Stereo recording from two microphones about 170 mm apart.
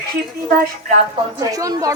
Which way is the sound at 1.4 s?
20° right (ahead or behind).